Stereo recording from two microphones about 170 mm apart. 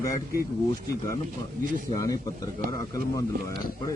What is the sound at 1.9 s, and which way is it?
Speech, 20° left (ahead or behind).